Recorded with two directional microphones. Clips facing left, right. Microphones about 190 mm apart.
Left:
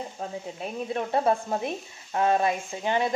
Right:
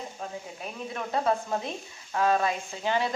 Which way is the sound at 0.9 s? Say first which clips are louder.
Left 3 dB; 25° left (ahead or behind).